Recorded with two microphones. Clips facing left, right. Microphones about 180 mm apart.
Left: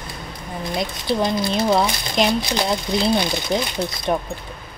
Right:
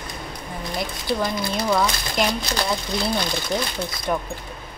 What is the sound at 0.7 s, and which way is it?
Speech, 25° left (ahead or behind).